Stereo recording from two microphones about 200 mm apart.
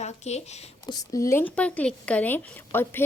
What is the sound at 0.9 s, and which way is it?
A woman's voice, 20° left (ahead or behind).